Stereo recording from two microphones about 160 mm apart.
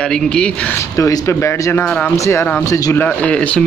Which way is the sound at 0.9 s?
20° left (ahead or behind).